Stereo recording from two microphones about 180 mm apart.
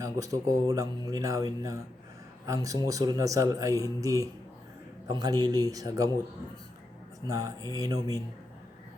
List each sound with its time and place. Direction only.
0.0 s speech: 20° right (ahead or behind)
7.3 s speech: 20° right (ahead or behind)